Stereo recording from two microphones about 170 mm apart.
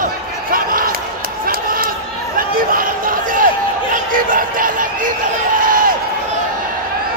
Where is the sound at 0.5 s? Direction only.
55° right (ahead or behind).